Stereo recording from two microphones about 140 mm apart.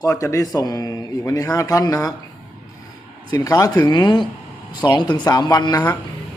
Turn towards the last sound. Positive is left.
turn(degrees=30)  # may be behind; listen again after turning